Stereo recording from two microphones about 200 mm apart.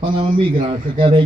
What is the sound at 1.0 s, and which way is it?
Speech, 25° right (ahead or behind).